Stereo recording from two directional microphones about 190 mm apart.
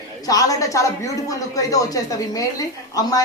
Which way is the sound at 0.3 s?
20° left (ahead or behind).